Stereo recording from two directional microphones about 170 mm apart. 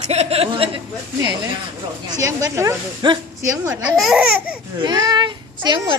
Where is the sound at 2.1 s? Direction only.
20° right (ahead or behind).